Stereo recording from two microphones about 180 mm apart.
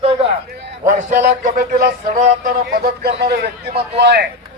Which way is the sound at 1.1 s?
45° right (ahead or behind).